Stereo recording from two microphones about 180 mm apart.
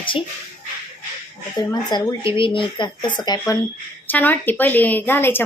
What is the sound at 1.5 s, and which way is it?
A woman's voice, 25° left (ahead or behind).